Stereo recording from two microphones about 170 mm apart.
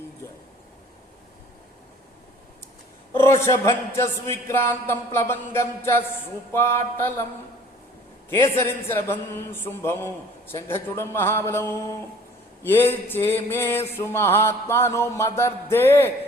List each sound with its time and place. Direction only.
3.1 s a sound: 15° left (ahead or behind)
3.4 s speech: 15° left (ahead or behind)
8.3 s speech: 15° left (ahead or behind)